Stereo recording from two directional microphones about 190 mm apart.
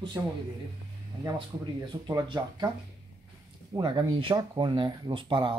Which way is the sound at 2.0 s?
20° right (ahead or behind).